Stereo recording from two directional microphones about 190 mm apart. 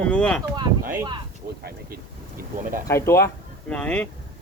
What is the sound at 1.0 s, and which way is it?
Speech, 25° right (ahead or behind).